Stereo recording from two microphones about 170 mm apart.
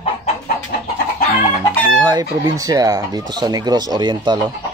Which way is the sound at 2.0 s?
25° right (ahead or behind).